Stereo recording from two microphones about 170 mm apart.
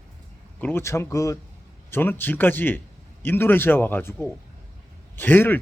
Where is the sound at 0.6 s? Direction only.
15° left (ahead or behind).